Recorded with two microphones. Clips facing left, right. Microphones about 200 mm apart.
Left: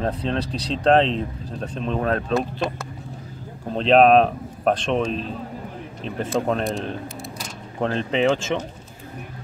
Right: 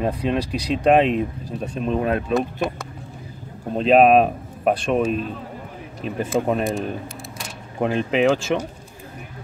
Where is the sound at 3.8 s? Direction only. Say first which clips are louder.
Right 1 dB; 5° right (ahead or behind).